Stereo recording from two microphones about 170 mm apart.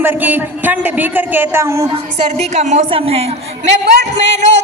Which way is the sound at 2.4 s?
45° right (ahead or behind).